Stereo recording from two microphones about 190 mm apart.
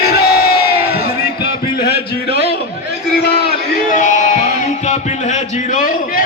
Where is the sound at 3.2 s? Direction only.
50° left (ahead or behind).